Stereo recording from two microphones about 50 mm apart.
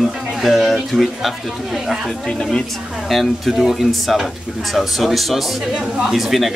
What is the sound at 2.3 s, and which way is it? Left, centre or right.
Speech, centre.